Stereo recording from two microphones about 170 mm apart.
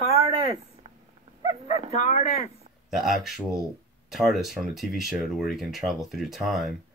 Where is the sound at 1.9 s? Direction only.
40° left (ahead or behind).